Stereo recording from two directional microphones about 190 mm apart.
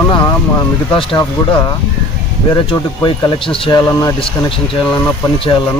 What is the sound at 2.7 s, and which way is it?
Speech, 20° left (ahead or behind).